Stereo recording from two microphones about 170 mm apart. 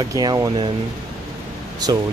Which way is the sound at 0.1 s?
20° right (ahead or behind).